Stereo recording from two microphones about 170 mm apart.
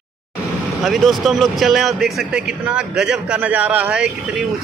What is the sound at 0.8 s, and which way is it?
A man's voice, centre (ahead or behind).